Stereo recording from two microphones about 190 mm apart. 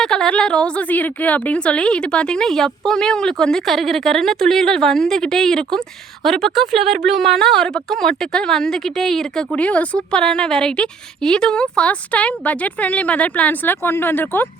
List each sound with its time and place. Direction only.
0.0 s speech: centre (ahead or behind)